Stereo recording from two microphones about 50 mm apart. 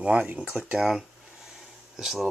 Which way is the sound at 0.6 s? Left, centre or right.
Centre.